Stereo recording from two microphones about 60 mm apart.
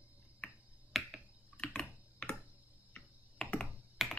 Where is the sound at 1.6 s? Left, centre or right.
Centre.